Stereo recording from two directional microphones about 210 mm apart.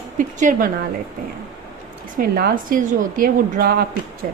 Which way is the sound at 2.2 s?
45° right (ahead or behind).